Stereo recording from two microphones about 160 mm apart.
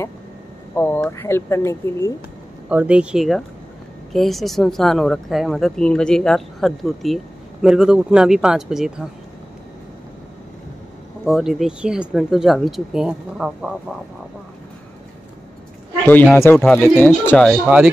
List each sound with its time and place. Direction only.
0.7 s speech: 15° left (ahead or behind)
2.7 s speech: 10° right (ahead or behind)
11.2 s speech: centre (ahead or behind)
16.1 s speech: 10° left (ahead or behind)